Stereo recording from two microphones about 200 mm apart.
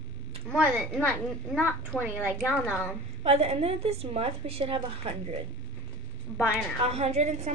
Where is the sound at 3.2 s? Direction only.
30° right (ahead or behind).